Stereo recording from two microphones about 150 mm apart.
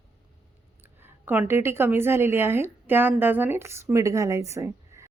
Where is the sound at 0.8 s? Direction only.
15° right (ahead or behind).